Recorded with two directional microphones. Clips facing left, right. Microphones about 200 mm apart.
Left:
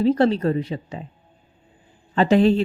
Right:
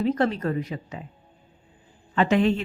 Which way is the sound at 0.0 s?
30° left (ahead or behind).